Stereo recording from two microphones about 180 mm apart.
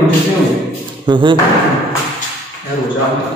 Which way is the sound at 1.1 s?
25° right (ahead or behind).